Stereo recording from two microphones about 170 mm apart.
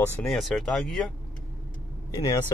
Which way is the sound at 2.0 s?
20° left (ahead or behind).